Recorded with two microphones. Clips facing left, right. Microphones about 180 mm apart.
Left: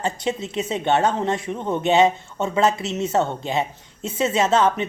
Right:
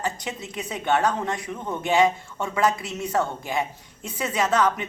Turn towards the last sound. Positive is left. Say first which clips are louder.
# left 4 dB
turn(degrees=25)  # may be behind; listen again after turning